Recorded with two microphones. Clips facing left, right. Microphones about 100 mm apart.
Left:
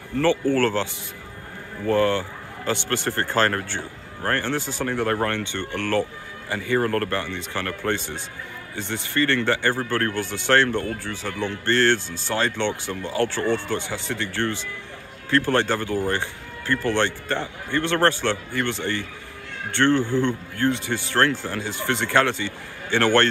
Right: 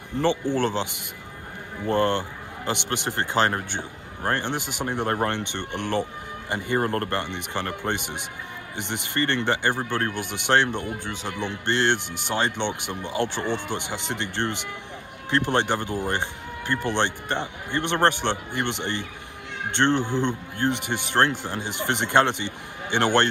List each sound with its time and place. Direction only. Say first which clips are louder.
0.1 s speech: left 3 dB; 20° right (ahead or behind)
1.9 s a man's voice: left 2 dB; 20° right (ahead or behind)